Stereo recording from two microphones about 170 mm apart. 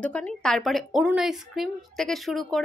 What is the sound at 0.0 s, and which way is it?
A woman's voice, 5° left (ahead or behind).